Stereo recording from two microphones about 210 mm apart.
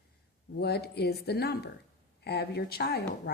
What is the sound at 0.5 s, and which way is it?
A woman's voice, 50° left (ahead or behind).